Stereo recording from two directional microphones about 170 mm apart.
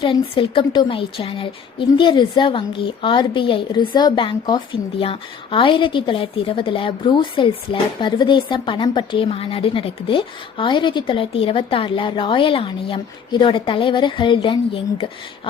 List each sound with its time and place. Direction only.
0.0 s a woman's voice: 30° left (ahead or behind)